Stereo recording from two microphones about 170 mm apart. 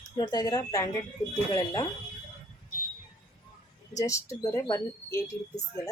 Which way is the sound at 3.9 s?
20° left (ahead or behind).